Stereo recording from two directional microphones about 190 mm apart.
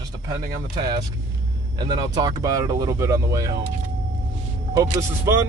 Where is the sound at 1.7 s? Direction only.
20° right (ahead or behind).